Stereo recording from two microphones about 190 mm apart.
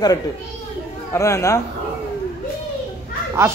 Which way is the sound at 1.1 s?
15° left (ahead or behind).